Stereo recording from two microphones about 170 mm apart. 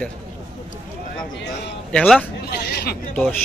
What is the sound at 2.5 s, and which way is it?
Hubbub, 75° left (ahead or behind).